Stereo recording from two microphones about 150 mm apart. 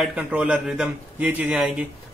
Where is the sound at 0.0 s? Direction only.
10° right (ahead or behind).